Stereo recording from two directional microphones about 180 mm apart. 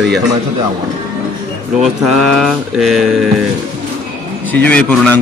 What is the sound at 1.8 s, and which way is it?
A man's voice, centre (ahead or behind).